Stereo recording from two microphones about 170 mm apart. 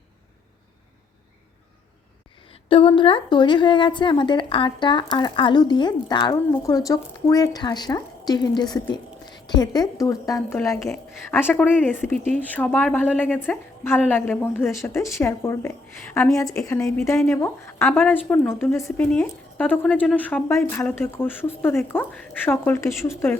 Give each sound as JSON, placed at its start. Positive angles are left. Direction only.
{"t": 2.5, "sound": "a woman's voice", "side_deg": 30}